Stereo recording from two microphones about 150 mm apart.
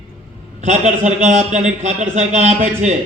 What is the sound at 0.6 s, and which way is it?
A man's voice, 55° right (ahead or behind).